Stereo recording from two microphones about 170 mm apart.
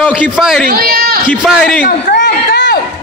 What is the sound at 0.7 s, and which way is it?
Speech, 65° right (ahead or behind).